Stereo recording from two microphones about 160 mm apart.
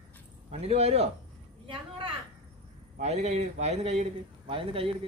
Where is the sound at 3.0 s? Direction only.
40° right (ahead or behind).